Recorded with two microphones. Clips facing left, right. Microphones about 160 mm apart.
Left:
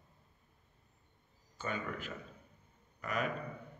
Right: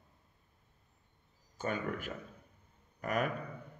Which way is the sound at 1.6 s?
50° right (ahead or behind).